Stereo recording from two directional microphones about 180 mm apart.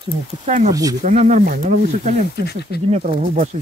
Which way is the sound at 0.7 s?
20° right (ahead or behind).